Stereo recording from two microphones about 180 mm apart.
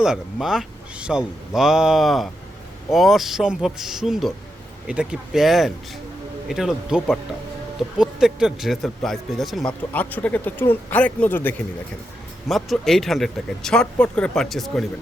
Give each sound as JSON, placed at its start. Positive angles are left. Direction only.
{"t": 0.0, "sound": "speech", "side_deg": -5}